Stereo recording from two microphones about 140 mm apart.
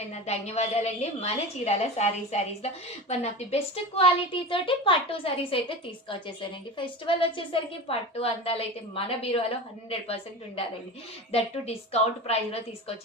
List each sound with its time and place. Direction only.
0.1 s a woman's voice: 50° left (ahead or behind)